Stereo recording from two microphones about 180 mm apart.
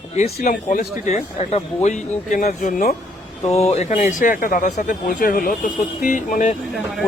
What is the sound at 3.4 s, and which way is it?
Speech, 35° left (ahead or behind).